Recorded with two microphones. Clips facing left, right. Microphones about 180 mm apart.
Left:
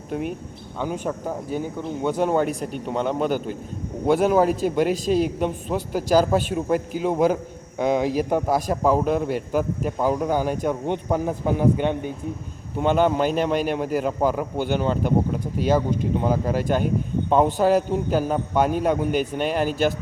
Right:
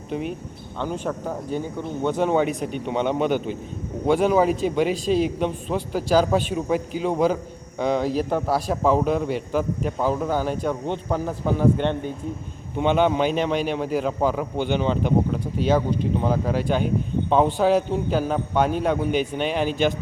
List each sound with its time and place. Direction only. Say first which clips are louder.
0.8 s a man's voice: even; 10° left (ahead or behind)
4.9 s speech: even; 45° left (ahead or behind)
5.4 s a man's voice: even; 5° left (ahead or behind)